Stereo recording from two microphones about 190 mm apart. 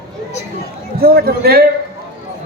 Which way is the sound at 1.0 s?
55° right (ahead or behind).